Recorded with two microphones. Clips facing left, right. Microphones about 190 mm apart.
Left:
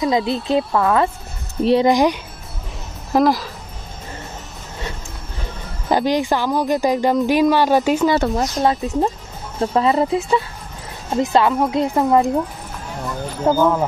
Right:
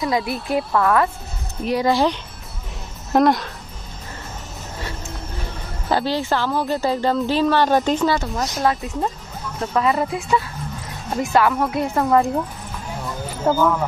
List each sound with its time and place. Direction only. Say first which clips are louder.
0.0 s speech: left 4 dB; 20° left (ahead or behind)
1.9 s speech: left 3 dB; 15° left (ahead or behind)
3.1 s a woman's voice: even; centre (ahead or behind)
5.9 s speech: left 3 dB; 15° left (ahead or behind)
8.6 s speech: left 2 dB; 25° left (ahead or behind)
13.4 s speech: left 2 dB; 10° left (ahead or behind)